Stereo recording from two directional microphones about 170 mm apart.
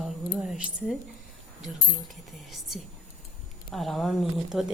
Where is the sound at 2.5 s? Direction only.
Centre (ahead or behind).